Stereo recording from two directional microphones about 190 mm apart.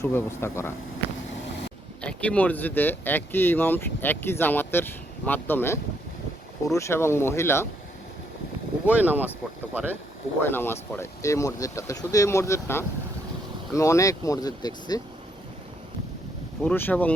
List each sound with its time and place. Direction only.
0.0 s speech: 10° left (ahead or behind)
2.0 s speech: 5° left (ahead or behind)
8.9 s speech: 10° right (ahead or behind)
10.4 s speech: 10° left (ahead or behind)
16.6 s speech: 10° left (ahead or behind)